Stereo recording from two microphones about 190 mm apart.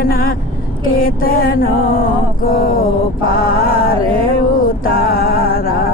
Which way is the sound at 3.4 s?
50° left (ahead or behind).